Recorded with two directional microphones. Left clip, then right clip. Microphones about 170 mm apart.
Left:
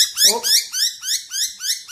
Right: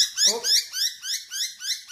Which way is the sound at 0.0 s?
25° left (ahead or behind).